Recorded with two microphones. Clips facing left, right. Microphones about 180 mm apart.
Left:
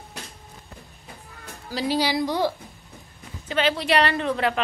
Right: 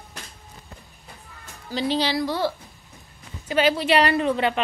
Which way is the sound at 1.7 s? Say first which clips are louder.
Even; 10° left (ahead or behind).